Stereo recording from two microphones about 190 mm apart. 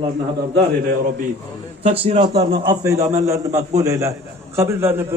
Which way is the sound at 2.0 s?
30° right (ahead or behind).